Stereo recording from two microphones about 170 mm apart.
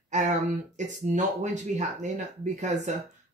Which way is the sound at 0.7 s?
45° right (ahead or behind).